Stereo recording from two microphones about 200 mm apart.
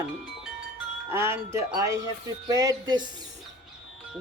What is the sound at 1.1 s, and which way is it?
Speech, 10° right (ahead or behind).